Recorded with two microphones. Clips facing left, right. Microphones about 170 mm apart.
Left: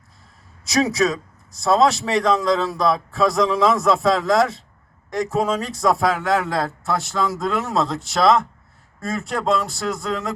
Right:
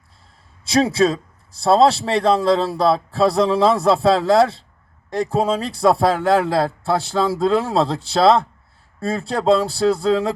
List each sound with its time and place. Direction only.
0.6 s speech: 30° right (ahead or behind)